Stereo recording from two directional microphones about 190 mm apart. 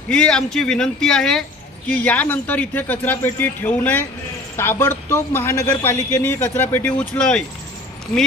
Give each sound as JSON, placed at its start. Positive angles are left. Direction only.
{"t": 0.1, "sound": "speech", "side_deg": 5}